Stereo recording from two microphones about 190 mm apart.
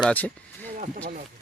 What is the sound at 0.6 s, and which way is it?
Speech, 45° right (ahead or behind).